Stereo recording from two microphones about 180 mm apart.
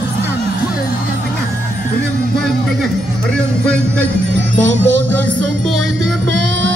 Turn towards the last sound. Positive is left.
turn(degrees=-85)